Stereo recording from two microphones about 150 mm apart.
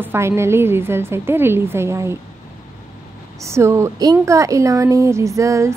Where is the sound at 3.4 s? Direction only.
20° right (ahead or behind).